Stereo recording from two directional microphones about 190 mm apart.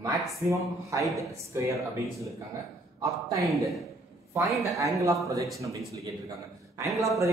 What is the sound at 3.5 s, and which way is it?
Speech, centre (ahead or behind).